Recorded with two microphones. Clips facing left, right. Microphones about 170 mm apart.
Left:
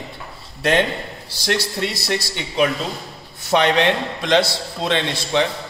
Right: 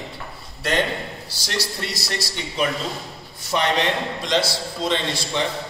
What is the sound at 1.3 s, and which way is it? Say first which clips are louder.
A man's voice: left 7 dB; 55° left (ahead or behind).